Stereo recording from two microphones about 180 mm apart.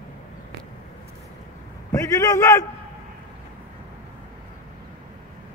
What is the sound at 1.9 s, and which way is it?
Speech, 20° left (ahead or behind).